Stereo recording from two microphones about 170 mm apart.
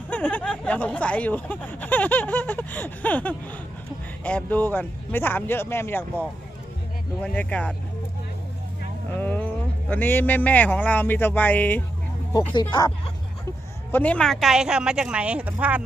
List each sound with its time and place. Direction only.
0.1 s speech: 10° left (ahead or behind)
7.2 s speech: 5° left (ahead or behind)
9.1 s speech: 10° left (ahead or behind)
12.3 s speech: 25° left (ahead or behind)
13.9 s speech: 5° left (ahead or behind); by 15.8 s 10° right (ahead or behind)